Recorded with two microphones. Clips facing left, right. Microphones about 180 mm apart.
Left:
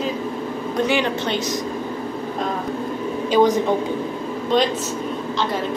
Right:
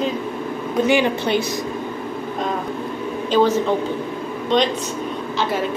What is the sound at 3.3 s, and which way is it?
Speech, 15° left (ahead or behind).